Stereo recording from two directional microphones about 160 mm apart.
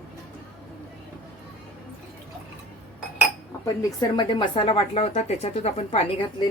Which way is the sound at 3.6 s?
25° left (ahead or behind).